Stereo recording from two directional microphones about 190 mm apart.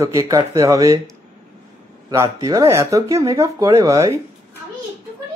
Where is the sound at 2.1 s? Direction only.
15° right (ahead or behind).